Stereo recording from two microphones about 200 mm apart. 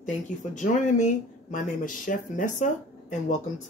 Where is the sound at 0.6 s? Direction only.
35° left (ahead or behind).